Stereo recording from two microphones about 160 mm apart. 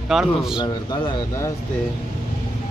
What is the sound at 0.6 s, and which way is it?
Speech, 25° left (ahead or behind).